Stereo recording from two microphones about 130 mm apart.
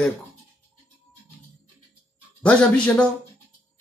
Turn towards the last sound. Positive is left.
turn(degrees=10)  # may be behind; listen again after turning